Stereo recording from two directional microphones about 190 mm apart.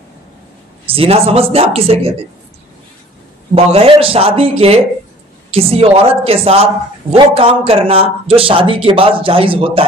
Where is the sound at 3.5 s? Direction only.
30° right (ahead or behind).